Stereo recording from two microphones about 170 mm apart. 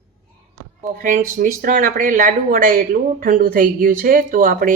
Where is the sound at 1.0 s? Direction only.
50° right (ahead or behind).